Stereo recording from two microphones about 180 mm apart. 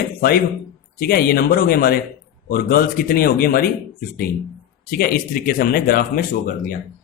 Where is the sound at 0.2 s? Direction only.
55° left (ahead or behind).